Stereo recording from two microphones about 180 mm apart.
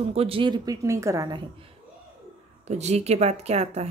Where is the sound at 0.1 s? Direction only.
30° right (ahead or behind).